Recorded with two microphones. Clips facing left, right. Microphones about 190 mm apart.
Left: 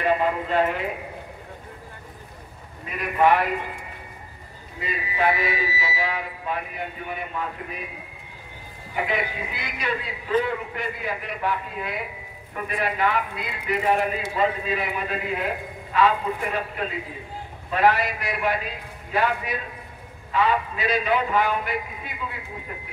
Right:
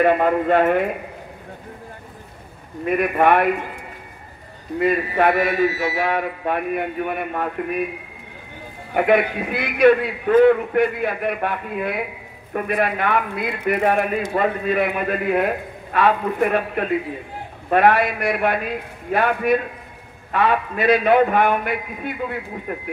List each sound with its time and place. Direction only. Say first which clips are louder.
0.0 s a man's voice: right 6 dB; 55° right (ahead or behind)
2.8 s a man's voice: right 4 dB; 60° right (ahead or behind)
4.7 s a man's voice: right 10 dB; 60° right (ahead or behind)
8.9 s a man's voice: right 10 dB; 60° right (ahead or behind)